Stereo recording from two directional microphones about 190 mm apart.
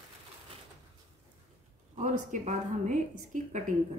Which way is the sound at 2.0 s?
40° right (ahead or behind).